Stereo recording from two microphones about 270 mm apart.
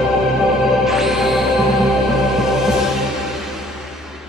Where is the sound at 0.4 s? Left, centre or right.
Centre.